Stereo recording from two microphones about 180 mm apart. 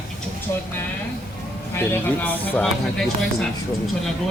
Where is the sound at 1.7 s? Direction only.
10° left (ahead or behind).